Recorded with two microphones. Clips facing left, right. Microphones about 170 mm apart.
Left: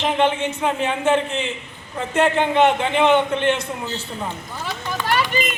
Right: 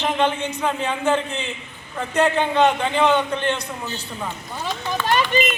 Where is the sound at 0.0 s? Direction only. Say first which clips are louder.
Left 2 dB; 25° left (ahead or behind).